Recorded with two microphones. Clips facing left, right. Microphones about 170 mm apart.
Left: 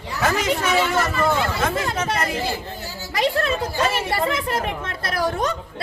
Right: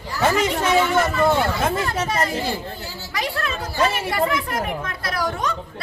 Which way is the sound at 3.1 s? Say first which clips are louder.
Left 6 dB; 30° left (ahead or behind).